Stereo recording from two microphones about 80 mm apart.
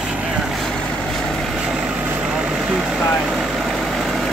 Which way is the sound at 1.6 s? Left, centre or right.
Centre.